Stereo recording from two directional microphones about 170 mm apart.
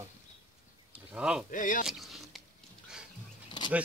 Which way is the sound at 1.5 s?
50° left (ahead or behind).